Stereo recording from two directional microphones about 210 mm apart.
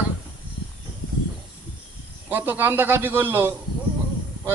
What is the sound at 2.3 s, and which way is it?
A man's voice, 10° right (ahead or behind).